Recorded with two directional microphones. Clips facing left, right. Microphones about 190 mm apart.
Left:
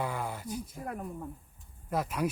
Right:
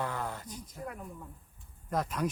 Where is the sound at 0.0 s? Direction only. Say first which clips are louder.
Left 1 dB; 10° left (ahead or behind).